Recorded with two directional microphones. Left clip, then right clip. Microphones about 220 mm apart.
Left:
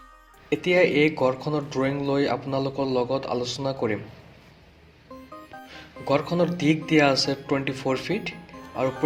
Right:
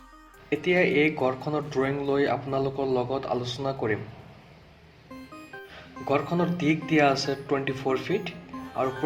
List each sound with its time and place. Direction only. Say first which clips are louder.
0.5 s speech: left 3 dB; 20° left (ahead or behind)
6.1 s speech: left 3 dB; 20° left (ahead or behind)